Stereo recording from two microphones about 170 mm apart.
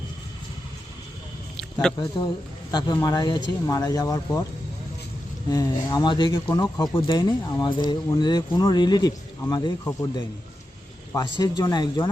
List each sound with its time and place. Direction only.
1.9 s speech: 5° left (ahead or behind)
2.7 s speech: 20° left (ahead or behind)
5.5 s speech: 20° left (ahead or behind)
11.1 s speech: 25° left (ahead or behind)